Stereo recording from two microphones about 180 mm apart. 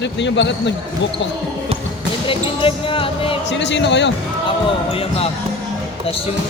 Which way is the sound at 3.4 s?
75° left (ahead or behind).